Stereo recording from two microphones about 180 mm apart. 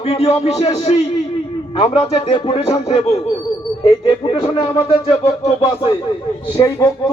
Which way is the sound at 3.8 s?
25° left (ahead or behind).